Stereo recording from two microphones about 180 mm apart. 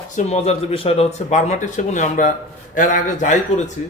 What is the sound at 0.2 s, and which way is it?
A man's voice, 35° left (ahead or behind).